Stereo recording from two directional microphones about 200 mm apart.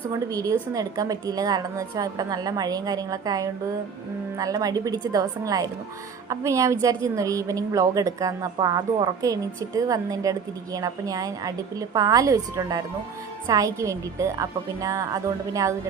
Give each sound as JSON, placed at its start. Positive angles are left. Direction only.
{"t": 0.1, "sound": "a woman's voice", "side_deg": -15}